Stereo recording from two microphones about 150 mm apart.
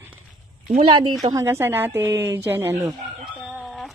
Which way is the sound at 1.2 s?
20° right (ahead or behind).